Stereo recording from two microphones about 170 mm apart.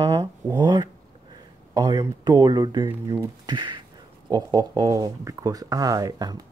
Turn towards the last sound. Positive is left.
turn(degrees=-20)  # may be behind; listen again after turning